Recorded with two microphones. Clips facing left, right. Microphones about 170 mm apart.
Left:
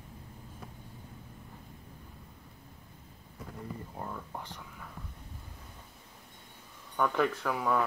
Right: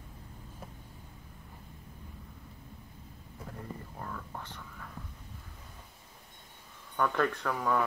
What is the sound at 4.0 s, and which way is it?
Speech, 20° left (ahead or behind).